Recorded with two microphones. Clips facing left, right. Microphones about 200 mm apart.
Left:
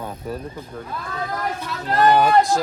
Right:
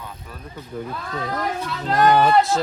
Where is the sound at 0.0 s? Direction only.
40° left (ahead or behind).